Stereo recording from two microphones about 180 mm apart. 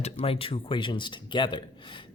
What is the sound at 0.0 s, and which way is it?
Speech, 30° left (ahead or behind).